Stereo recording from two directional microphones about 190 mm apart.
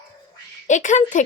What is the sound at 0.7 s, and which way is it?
Speech, 40° left (ahead or behind).